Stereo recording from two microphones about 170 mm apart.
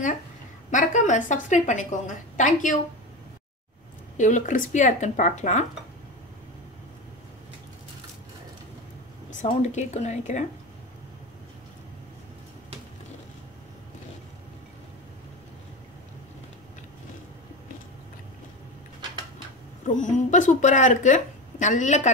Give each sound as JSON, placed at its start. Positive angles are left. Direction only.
{"t": 0.7, "sound": "speech", "side_deg": 45}
{"t": 4.2, "sound": "speech", "side_deg": 45}
{"t": 9.3, "sound": "speech", "side_deg": 45}
{"t": 19.8, "sound": "speech", "side_deg": 45}